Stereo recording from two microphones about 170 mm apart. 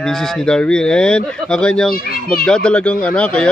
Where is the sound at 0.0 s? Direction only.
5° left (ahead or behind).